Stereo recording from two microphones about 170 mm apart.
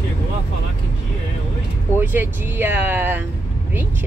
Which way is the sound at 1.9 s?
10° right (ahead or behind).